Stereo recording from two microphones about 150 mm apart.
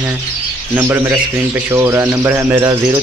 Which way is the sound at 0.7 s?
15° right (ahead or behind).